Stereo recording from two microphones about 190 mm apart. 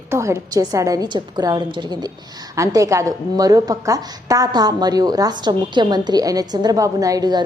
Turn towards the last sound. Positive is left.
turn(degrees=-20)  # may be behind; listen again after turning